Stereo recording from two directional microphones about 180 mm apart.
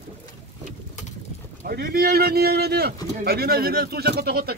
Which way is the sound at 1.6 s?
55° right (ahead or behind).